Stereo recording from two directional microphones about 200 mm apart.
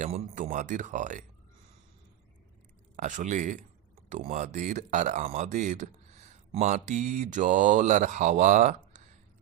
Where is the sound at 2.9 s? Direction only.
40° right (ahead or behind).